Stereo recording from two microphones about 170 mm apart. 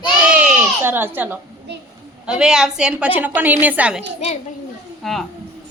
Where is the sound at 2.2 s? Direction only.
5° right (ahead or behind).